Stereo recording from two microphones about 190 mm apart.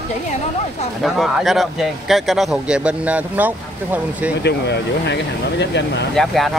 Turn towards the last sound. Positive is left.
turn(degrees=0)  # may be behind; listen again after turning